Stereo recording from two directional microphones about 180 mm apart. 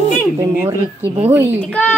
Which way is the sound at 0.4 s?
15° right (ahead or behind).